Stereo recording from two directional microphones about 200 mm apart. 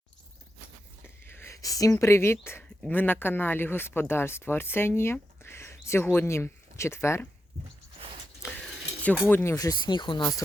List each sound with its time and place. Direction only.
1.0 s speech: 10° left (ahead or behind)
9.3 s speech: 15° left (ahead or behind)